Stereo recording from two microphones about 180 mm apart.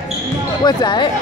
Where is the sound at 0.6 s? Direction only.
25° left (ahead or behind).